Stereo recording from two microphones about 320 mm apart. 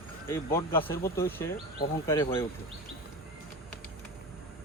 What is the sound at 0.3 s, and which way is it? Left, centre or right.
Speech, centre.